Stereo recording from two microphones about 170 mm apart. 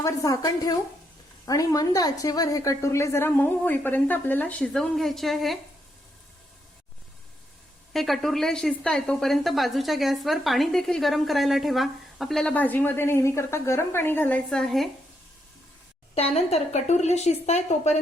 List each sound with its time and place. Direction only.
0.0 s a woman's voice: 20° left (ahead or behind); by 5.5 s centre (ahead or behind)
7.9 s a woman's voice: centre (ahead or behind)
16.1 s a woman's voice: 35° left (ahead or behind)